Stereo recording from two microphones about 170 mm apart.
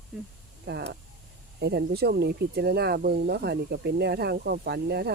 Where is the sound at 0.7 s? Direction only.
75° right (ahead or behind).